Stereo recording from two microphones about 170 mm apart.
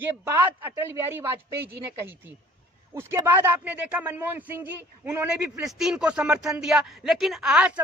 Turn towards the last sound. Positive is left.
turn(degrees=-5)  # may be behind; listen again after turning